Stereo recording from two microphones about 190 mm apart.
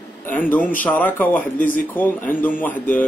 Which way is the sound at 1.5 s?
45° left (ahead or behind).